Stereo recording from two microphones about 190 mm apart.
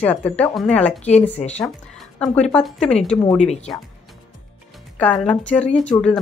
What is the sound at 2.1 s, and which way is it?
A woman's voice, 5° left (ahead or behind).